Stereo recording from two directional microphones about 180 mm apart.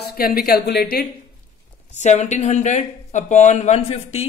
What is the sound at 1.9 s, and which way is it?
Speech, 40° left (ahead or behind).